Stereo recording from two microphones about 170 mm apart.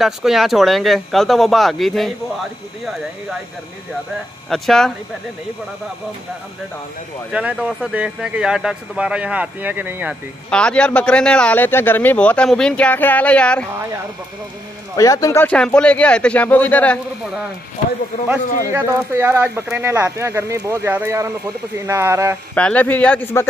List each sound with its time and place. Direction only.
0.0 s speech: centre (ahead or behind)
4.5 s speech: centre (ahead or behind)
7.2 s speech: 5° right (ahead or behind)
10.5 s speech: 5° left (ahead or behind)
15.0 s speech: 20° left (ahead or behind)
18.7 s speech: 15° right (ahead or behind)
22.5 s speech: 10° left (ahead or behind)